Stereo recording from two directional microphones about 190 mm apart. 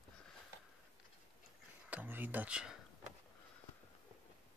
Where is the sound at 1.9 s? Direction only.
10° right (ahead or behind).